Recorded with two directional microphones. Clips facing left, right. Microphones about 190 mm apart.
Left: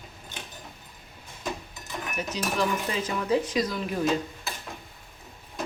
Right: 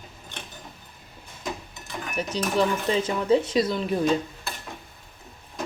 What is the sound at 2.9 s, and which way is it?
Speech, 25° right (ahead or behind).